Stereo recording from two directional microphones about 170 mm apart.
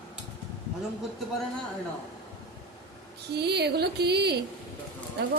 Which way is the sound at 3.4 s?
75° right (ahead or behind).